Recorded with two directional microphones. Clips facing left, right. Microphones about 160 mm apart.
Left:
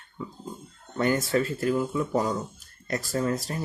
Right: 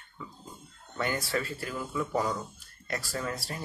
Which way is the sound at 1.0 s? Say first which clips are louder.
Left 7 dB; 45° left (ahead or behind).